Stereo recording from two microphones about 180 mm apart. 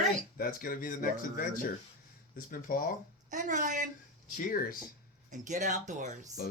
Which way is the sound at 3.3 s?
45° right (ahead or behind).